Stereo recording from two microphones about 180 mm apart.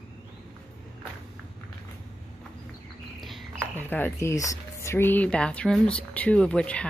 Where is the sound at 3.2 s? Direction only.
Centre (ahead or behind).